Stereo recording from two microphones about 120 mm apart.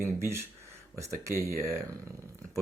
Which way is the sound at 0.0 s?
20° right (ahead or behind).